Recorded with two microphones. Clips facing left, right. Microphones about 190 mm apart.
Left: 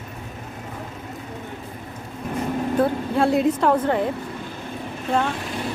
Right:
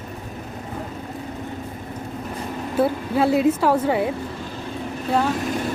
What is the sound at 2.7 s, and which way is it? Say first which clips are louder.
Speech: right 2 dB; 5° right (ahead or behind).